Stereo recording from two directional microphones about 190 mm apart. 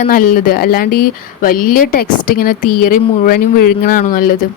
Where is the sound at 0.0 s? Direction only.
45° left (ahead or behind).